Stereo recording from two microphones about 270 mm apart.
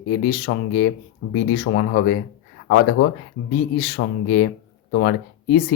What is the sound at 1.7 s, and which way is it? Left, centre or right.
Speech, left.